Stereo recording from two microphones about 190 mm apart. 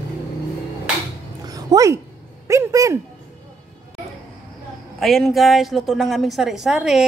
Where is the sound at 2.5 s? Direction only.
15° right (ahead or behind).